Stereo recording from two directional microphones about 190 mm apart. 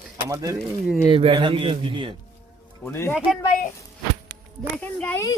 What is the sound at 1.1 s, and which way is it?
A man's voice, 30° right (ahead or behind).